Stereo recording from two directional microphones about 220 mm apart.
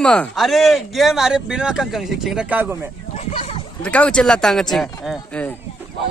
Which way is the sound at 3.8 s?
5° left (ahead or behind).